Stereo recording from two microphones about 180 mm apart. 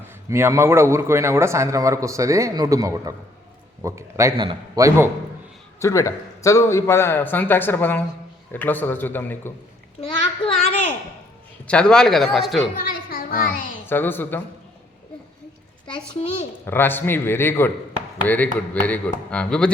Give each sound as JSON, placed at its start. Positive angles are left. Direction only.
{"t": 0.3, "sound": "a man's voice", "side_deg": -15}
{"t": 5.8, "sound": "speech", "side_deg": 15}
{"t": 10.0, "sound": "a child's voice", "side_deg": 30}
{"t": 11.7, "sound": "speech", "side_deg": 5}
{"t": 12.7, "sound": "a child's voice", "side_deg": 55}
{"t": 13.8, "sound": "speech", "side_deg": 10}
{"t": 16.6, "sound": "speech", "side_deg": 10}